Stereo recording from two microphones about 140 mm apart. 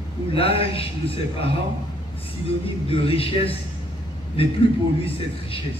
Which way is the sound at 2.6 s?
40° left (ahead or behind).